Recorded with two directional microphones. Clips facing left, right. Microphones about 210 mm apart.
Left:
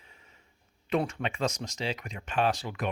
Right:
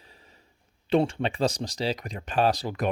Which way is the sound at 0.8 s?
30° right (ahead or behind).